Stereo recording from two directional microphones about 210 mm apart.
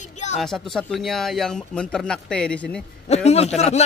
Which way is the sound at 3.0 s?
30° left (ahead or behind).